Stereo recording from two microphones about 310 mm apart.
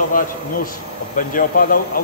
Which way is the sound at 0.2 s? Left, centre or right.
Left.